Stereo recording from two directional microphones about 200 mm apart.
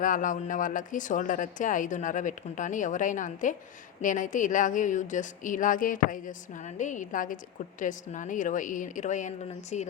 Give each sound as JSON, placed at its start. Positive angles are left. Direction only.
{"t": 0.0, "sound": "a woman's voice", "side_deg": 40}